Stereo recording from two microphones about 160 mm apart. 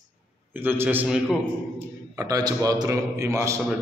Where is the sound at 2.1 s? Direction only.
20° right (ahead or behind).